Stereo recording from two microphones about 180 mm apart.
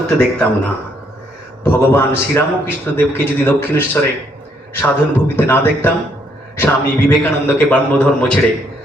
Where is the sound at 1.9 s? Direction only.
10° left (ahead or behind).